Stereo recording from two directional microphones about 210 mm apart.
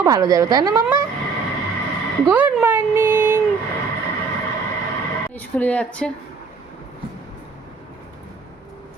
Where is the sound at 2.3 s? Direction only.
10° right (ahead or behind).